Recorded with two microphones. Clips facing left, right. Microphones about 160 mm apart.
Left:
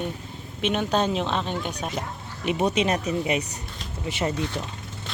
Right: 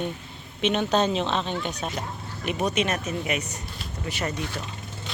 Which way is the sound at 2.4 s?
25° left (ahead or behind).